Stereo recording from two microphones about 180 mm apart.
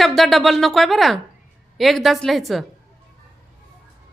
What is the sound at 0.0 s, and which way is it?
Speech, centre (ahead or behind).